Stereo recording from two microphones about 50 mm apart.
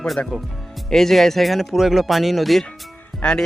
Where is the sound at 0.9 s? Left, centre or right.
Centre.